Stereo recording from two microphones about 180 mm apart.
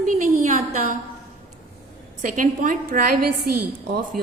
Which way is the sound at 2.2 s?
45° right (ahead or behind).